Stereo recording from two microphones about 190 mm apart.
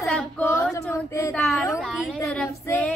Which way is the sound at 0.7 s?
15° left (ahead or behind).